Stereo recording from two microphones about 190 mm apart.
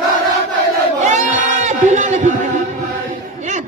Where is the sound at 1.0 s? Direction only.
40° right (ahead or behind).